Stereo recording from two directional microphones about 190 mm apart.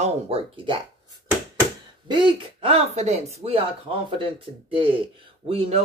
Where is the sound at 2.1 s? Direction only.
25° right (ahead or behind).